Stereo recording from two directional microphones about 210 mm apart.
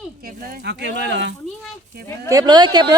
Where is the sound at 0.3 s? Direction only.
45° right (ahead or behind).